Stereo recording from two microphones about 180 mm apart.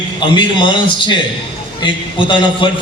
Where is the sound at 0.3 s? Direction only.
25° left (ahead or behind).